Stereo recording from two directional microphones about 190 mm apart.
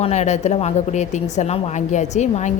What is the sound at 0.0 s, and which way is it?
A woman's voice, 35° left (ahead or behind).